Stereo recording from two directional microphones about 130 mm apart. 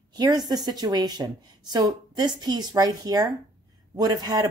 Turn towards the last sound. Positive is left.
turn(degrees=-30)  # may be behind; listen again after turning